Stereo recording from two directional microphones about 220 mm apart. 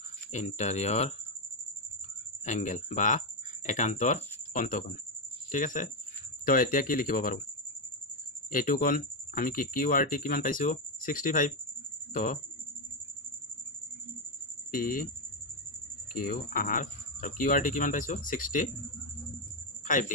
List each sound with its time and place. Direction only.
0.3 s speech: 30° left (ahead or behind)
2.4 s speech: 35° left (ahead or behind)
8.5 s speech: 40° left (ahead or behind)
14.7 s speech: 40° left (ahead or behind)
16.1 s speech: 40° left (ahead or behind)